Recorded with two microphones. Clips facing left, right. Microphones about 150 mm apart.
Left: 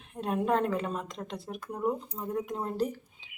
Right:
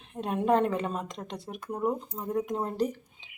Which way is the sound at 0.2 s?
Centre (ahead or behind).